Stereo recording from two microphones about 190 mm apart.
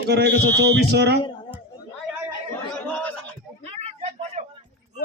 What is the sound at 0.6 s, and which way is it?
Speech, 60° right (ahead or behind).